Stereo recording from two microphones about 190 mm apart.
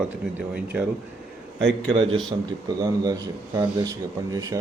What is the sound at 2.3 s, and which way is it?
Speech, 20° right (ahead or behind).